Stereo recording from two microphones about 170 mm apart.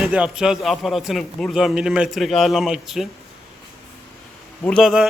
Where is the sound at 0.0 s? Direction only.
5° right (ahead or behind).